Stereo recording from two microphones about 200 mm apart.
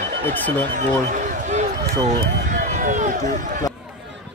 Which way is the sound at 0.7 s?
40° right (ahead or behind).